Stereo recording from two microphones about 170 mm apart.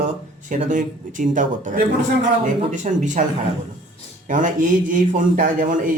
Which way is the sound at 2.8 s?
45° right (ahead or behind).